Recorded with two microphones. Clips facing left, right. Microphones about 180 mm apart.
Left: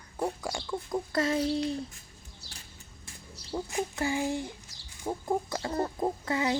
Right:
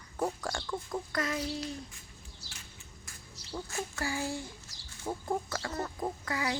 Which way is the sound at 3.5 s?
15° left (ahead or behind).